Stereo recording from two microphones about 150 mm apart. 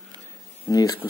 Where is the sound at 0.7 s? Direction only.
25° left (ahead or behind).